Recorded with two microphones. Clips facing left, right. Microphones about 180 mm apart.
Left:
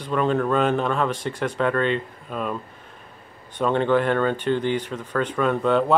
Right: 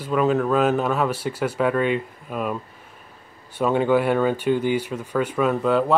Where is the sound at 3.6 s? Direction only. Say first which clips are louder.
Right 1 dB; 5° right (ahead or behind).